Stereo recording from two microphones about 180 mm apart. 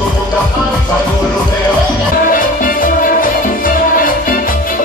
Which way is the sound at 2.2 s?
50° left (ahead or behind).